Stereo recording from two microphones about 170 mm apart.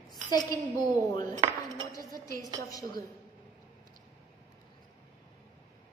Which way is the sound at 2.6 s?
20° left (ahead or behind).